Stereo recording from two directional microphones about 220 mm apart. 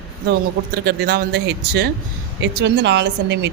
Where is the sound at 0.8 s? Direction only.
45° right (ahead or behind).